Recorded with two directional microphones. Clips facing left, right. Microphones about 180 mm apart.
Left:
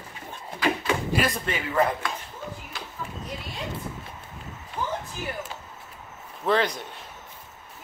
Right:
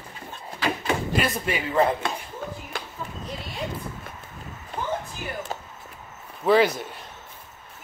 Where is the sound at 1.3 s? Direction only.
10° right (ahead or behind).